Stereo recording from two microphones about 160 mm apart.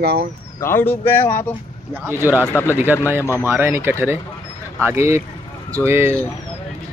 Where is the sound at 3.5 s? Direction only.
15° right (ahead or behind).